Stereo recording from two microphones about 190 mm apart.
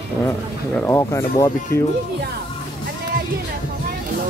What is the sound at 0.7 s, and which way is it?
Speech, 15° left (ahead or behind).